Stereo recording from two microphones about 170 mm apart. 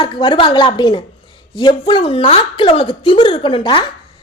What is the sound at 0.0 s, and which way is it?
A woman's voice, 30° left (ahead or behind).